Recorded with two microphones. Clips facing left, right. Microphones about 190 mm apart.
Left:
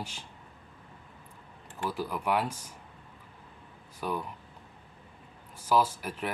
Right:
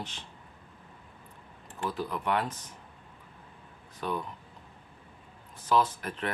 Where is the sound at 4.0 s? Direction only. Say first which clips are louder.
Even; 10° left (ahead or behind).